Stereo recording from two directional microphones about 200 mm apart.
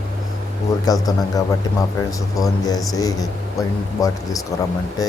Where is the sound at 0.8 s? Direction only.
20° left (ahead or behind).